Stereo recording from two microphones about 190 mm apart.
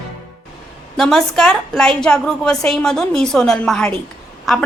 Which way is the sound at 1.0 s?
Centre (ahead or behind).